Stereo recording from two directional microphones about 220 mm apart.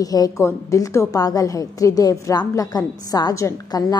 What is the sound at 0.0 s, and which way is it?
A woman's voice, 15° left (ahead or behind).